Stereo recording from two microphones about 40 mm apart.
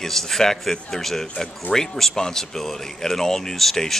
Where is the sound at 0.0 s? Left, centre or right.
Centre.